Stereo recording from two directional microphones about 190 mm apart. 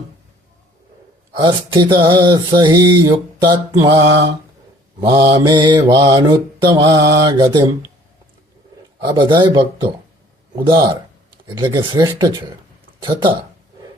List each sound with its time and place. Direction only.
1.3 s mantra: 25° right (ahead or behind)
9.0 s mantra: 25° right (ahead or behind)